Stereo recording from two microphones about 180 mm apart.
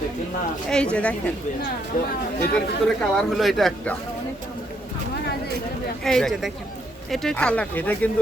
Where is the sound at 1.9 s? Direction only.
50° left (ahead or behind).